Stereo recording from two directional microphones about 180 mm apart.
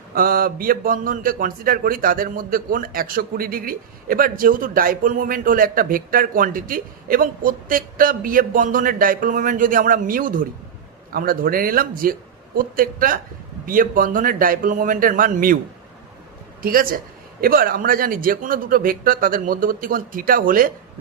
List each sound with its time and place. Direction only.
0.1 s a man's voice: 55° right (ahead or behind)
16.6 s a man's voice: 55° right (ahead or behind)